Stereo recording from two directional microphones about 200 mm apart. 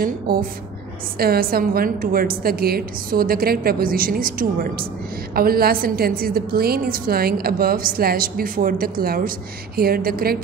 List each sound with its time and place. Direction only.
0.0 s a woman's voice: 45° right (ahead or behind)